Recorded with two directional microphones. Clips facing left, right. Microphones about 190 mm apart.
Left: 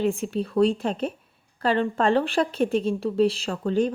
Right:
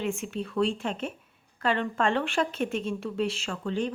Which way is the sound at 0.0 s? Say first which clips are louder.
Left 6 dB; 35° left (ahead or behind).